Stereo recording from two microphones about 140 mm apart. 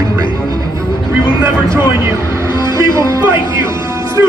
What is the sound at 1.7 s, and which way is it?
Speech, 20° right (ahead or behind).